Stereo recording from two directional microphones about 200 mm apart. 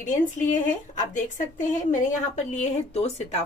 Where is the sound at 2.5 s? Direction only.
30° left (ahead or behind).